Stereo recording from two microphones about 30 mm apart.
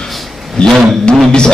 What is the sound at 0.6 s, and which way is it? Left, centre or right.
Speech, left.